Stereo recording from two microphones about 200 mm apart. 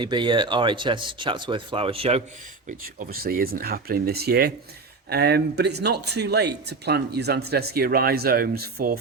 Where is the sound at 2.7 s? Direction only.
45° right (ahead or behind).